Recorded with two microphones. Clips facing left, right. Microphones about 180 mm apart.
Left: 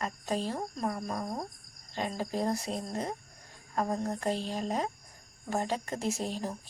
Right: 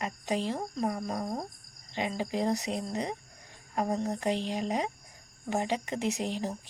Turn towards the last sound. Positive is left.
turn(degrees=-15)  # may be behind; listen again after turning